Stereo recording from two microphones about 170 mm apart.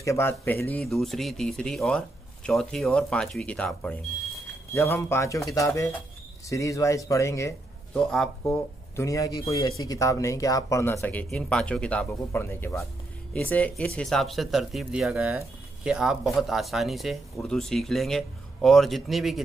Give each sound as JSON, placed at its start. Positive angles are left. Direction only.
{"t": 0.0, "sound": "speech", "side_deg": 15}
{"t": 7.9, "sound": "speech", "side_deg": 5}
{"t": 8.9, "sound": "speech", "side_deg": 20}